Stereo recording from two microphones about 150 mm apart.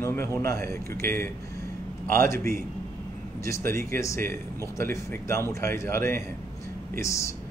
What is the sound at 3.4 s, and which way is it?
Speech, 20° left (ahead or behind).